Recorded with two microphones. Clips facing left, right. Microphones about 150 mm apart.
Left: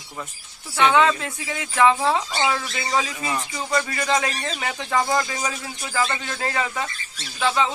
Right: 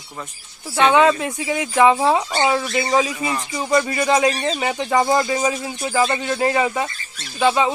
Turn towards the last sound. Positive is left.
turn(degrees=-20)  # may be behind; listen again after turning